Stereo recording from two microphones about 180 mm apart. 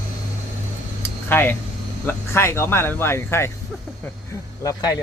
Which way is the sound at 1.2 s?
10° left (ahead or behind).